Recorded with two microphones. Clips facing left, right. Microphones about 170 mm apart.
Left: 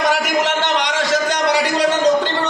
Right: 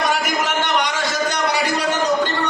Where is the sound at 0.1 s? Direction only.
85° left.